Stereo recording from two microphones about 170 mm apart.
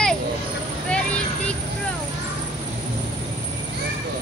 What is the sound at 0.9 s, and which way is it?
Vehicle, 5° left (ahead or behind).